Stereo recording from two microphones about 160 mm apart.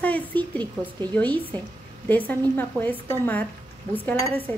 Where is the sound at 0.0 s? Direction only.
10° left (ahead or behind).